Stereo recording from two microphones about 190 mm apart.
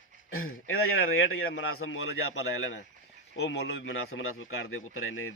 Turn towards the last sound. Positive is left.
turn(degrees=90)